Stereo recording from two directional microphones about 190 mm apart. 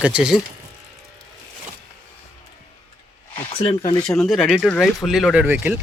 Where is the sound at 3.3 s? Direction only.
25° left (ahead or behind).